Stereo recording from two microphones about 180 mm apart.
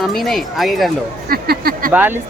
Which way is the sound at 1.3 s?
55° right (ahead or behind).